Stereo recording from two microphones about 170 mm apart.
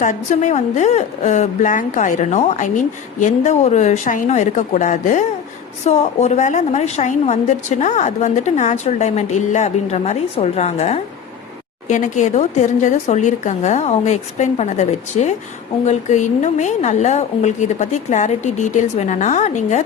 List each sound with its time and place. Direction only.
0.0 s a woman's voice: 45° left (ahead or behind)